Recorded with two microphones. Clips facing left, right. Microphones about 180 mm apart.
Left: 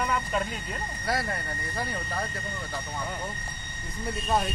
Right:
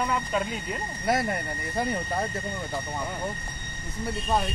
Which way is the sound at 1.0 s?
20° right (ahead or behind).